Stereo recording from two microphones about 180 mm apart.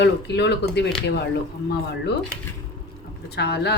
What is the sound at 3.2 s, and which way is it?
Speech, 65° left (ahead or behind).